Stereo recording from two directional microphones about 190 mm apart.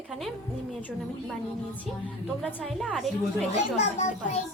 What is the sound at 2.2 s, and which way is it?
Speech, 5° left (ahead or behind).